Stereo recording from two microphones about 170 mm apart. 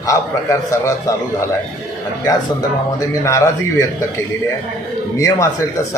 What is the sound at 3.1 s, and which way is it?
Speech, 20° left (ahead or behind).